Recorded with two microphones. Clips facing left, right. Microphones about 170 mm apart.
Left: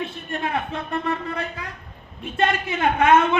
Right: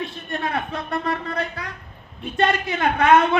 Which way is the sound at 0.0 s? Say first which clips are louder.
Even; 35° right (ahead or behind).